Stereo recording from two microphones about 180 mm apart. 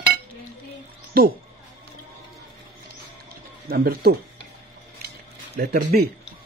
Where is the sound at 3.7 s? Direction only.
55° right (ahead or behind).